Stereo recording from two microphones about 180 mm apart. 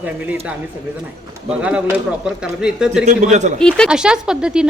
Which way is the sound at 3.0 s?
40° right (ahead or behind).